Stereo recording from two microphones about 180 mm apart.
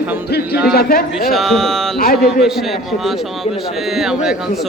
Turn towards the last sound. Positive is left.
turn(degrees=-5)  # may be behind; listen again after turning